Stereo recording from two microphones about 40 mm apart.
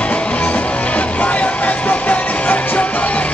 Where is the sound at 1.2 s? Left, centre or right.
Left.